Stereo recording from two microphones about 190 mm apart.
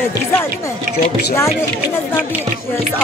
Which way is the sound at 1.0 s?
15° left (ahead or behind).